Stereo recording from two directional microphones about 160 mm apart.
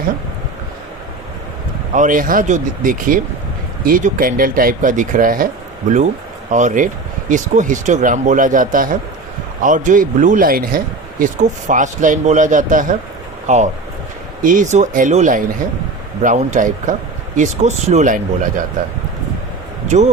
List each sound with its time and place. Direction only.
1.9 s speech: 55° right (ahead or behind)
6.5 s speech: 50° right (ahead or behind)
19.9 s speech: 45° right (ahead or behind)